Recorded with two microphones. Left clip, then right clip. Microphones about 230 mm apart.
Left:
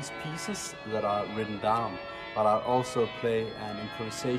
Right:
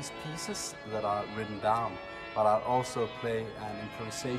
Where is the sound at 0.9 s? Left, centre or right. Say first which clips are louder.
Left 3 dB; left.